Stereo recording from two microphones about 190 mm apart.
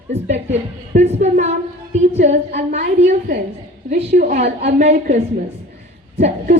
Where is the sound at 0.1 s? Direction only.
35° right (ahead or behind).